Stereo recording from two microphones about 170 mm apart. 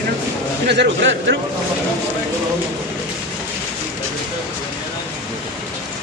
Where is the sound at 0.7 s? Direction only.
90° right.